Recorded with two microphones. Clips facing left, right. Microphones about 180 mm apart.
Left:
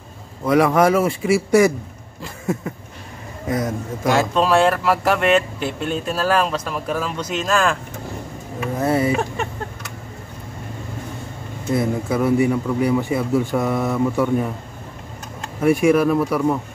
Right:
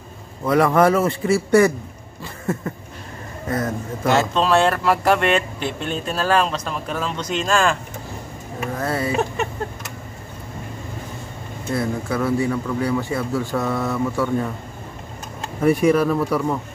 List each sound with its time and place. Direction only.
0.5 s speech: 5° left (ahead or behind)
3.4 s speech: 15° left (ahead or behind)
8.7 s speech: 20° left (ahead or behind)
11.7 s speech: 15° left (ahead or behind)
15.6 s speech: 10° left (ahead or behind)